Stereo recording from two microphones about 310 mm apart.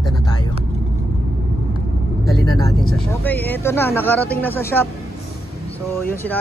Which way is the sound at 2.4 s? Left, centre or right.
Centre.